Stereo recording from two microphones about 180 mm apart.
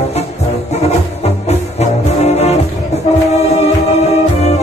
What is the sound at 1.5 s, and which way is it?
Music, 35° left (ahead or behind).